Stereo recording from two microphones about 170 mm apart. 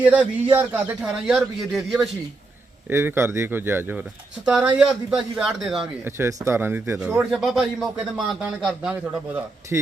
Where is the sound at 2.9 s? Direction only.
15° right (ahead or behind).